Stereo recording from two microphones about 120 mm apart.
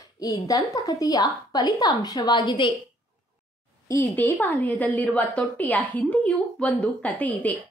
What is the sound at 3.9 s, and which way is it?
A woman's voice, 20° left (ahead or behind).